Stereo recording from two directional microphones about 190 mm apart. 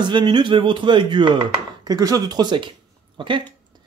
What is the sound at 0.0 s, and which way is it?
Speech, 25° right (ahead or behind).